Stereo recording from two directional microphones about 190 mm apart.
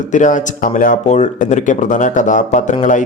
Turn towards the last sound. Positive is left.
turn(degrees=40)  # may be behind; listen again after turning